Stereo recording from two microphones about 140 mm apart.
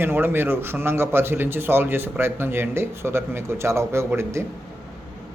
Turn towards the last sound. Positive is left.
turn(degrees=-20)  # may be behind; listen again after turning